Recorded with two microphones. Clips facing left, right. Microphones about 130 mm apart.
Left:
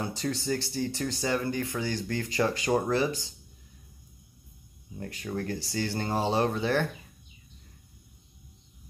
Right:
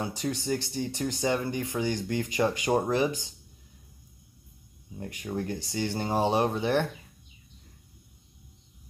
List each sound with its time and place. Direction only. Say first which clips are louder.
0.0 s speech: even; 15° right (ahead or behind)
4.9 s speech: right 1 dB; 15° right (ahead or behind)